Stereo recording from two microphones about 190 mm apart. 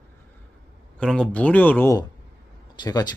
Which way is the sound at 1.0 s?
5° left (ahead or behind).